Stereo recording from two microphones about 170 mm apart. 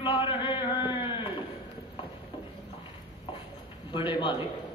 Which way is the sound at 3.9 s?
25° left (ahead or behind).